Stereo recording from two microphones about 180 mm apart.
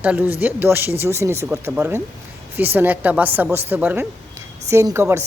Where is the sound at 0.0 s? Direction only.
10° right (ahead or behind).